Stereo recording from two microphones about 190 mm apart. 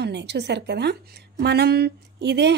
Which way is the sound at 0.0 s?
65° right (ahead or behind).